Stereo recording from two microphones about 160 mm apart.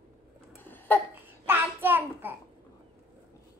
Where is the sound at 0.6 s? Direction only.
10° left (ahead or behind).